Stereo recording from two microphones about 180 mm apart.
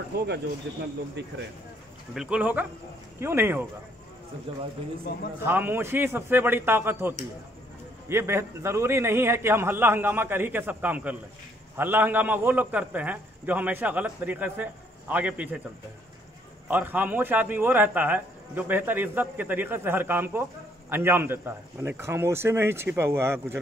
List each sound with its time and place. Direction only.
0.1 s speech: 65° right (ahead or behind)
2.1 s a man's voice: 5° right (ahead or behind)
4.5 s speech: 30° right (ahead or behind)
5.4 s a man's voice: 10° right (ahead or behind)
16.6 s a man's voice: 10° right (ahead or behind)